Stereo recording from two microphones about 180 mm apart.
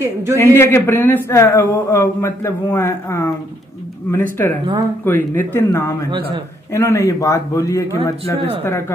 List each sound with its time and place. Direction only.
0.0 s a man's voice: 15° right (ahead or behind)
0.4 s speech: 15° left (ahead or behind)